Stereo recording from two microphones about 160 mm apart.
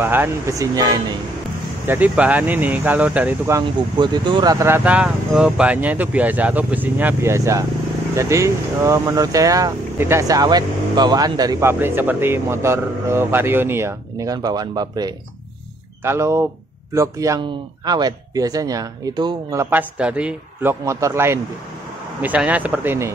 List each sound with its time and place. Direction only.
0.0 s speech: 15° right (ahead or behind)
1.9 s speech: 10° right (ahead or behind)
3.6 s speech: 30° right (ahead or behind)
11.8 s speech: 10° right (ahead or behind)
19.6 s speech: 10° right (ahead or behind)